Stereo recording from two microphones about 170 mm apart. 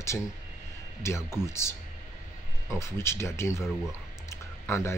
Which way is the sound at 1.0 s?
15° left (ahead or behind).